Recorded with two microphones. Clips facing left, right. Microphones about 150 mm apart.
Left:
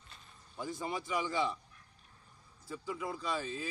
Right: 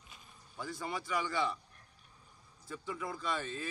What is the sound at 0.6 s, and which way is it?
A man's voice, 15° left (ahead or behind).